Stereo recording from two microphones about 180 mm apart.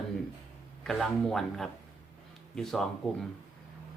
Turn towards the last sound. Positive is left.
turn(degrees=5)  # may be behind; listen again after turning